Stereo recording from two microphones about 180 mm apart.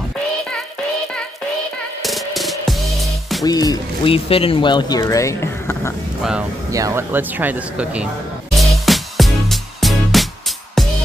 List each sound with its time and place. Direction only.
2.0 s music: centre (ahead or behind)
3.4 s speech: 20° left (ahead or behind)
6.7 s speech: 15° right (ahead or behind)
8.5 s music: centre (ahead or behind)